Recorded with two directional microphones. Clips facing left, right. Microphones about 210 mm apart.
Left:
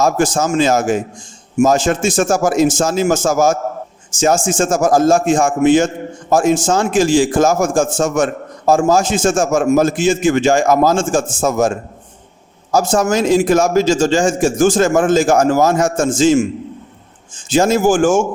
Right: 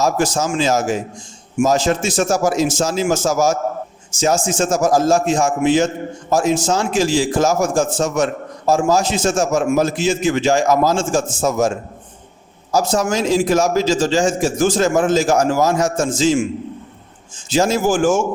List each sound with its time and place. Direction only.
0.0 s a man's voice: 50° left (ahead or behind)
12.7 s a man's voice: 50° left (ahead or behind)
17.5 s a man's voice: 50° left (ahead or behind)